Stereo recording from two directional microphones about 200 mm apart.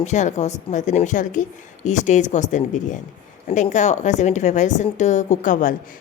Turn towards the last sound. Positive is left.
turn(degrees=40)  # may be behind; listen again after turning